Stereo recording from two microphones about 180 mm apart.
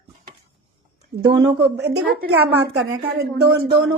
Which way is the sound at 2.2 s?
65° right (ahead or behind).